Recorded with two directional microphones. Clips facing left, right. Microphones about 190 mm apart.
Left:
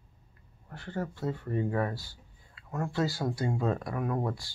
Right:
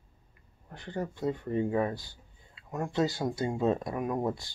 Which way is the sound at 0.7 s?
15° right (ahead or behind).